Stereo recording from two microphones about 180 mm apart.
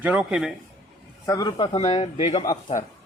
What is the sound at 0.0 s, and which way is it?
Speech, 5° right (ahead or behind).